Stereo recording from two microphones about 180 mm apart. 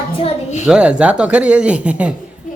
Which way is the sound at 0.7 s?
5° right (ahead or behind).